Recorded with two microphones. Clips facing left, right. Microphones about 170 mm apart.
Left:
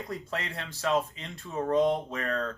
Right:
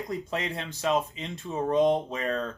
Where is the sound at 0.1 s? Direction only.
20° right (ahead or behind).